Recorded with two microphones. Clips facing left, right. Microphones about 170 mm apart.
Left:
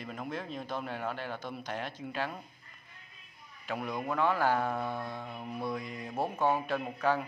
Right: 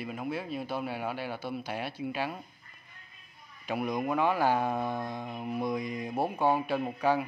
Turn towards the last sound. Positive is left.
turn(degrees=-15)  # may be behind; listen again after turning